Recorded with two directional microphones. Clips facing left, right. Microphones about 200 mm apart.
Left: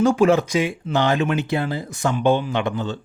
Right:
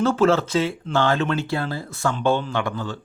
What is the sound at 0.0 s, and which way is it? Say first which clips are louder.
Speech: left 2 dB; 15° left (ahead or behind).